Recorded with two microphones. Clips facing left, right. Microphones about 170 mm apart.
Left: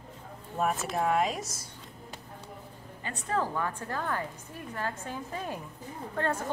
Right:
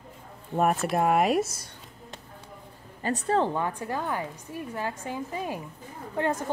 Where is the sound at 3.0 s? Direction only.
35° right (ahead or behind).